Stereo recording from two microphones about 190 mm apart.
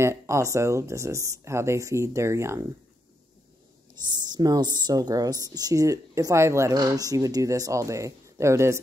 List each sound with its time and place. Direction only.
0.0 s speech: 15° right (ahead or behind)
3.9 s a woman's voice: 20° right (ahead or behind)